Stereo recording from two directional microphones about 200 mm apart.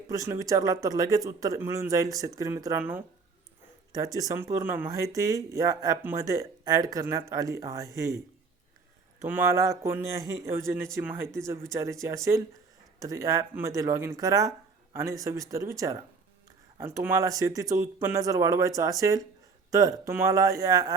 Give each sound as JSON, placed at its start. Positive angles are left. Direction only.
{"t": 0.1, "sound": "speech", "side_deg": -15}
{"t": 9.2, "sound": "speech", "side_deg": -10}